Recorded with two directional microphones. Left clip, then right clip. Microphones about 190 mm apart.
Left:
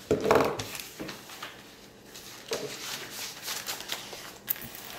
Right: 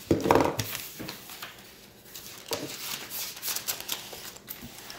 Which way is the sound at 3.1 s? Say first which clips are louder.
Right 1 dB; 55° right (ahead or behind).